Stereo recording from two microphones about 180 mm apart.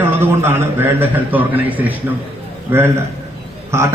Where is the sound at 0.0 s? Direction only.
10° right (ahead or behind).